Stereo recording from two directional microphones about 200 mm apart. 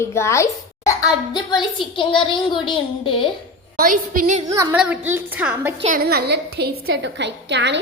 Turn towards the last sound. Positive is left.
turn(degrees=-60)  # may be behind; listen again after turning